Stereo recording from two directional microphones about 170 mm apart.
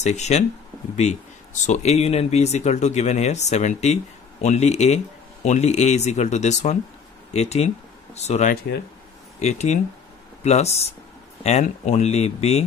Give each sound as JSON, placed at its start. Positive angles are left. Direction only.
{"t": 0.0, "sound": "speech", "side_deg": 40}